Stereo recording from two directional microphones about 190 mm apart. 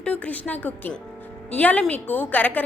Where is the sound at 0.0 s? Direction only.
5° left (ahead or behind).